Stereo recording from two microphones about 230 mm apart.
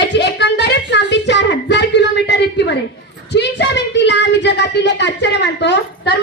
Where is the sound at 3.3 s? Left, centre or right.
Left.